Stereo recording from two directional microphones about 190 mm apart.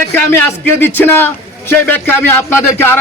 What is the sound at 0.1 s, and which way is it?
Speech, 10° left (ahead or behind).